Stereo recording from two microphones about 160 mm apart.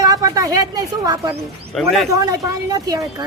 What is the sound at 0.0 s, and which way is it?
A woman's voice, 25° right (ahead or behind).